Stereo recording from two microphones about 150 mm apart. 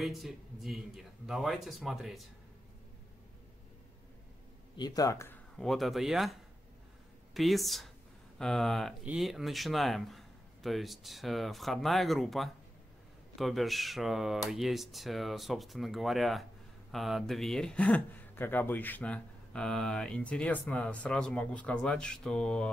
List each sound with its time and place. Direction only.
0.0 s a man's voice: centre (ahead or behind)
4.7 s speech: 25° left (ahead or behind)
5.6 s a man's voice: centre (ahead or behind)
7.3 s a man's voice: centre (ahead or behind)